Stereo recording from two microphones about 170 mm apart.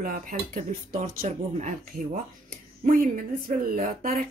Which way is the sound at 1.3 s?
45° right (ahead or behind).